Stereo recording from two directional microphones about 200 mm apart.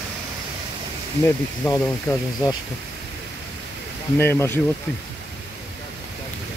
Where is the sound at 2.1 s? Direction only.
15° left (ahead or behind).